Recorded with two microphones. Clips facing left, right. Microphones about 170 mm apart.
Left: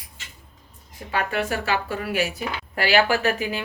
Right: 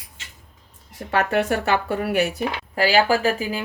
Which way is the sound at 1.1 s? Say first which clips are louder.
Right 5 dB; 60° right (ahead or behind).